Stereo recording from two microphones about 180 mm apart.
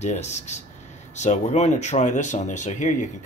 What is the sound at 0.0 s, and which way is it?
Speech, 40° left (ahead or behind).